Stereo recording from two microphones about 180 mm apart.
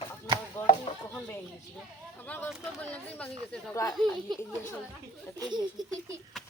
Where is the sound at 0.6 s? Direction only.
10° left (ahead or behind).